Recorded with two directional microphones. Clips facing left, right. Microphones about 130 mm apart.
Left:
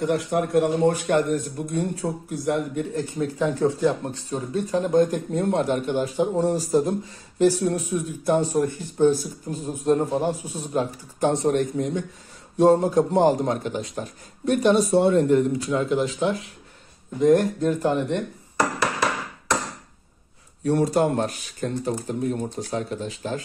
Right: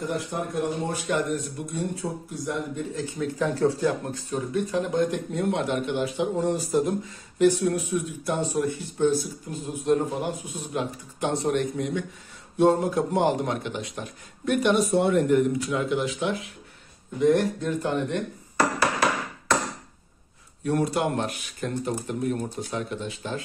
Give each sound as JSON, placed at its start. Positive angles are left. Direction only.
{"t": 0.0, "sound": "a man's voice", "side_deg": 70}
{"t": 1.0, "sound": "speech", "side_deg": 50}
{"t": 2.3, "sound": "speech", "side_deg": 65}
{"t": 3.3, "sound": "speech", "side_deg": 15}
{"t": 4.1, "sound": "speech", "side_deg": 35}
{"t": 20.6, "sound": "speech", "side_deg": 35}